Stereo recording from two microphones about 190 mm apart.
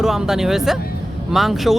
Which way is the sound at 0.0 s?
Centre (ahead or behind).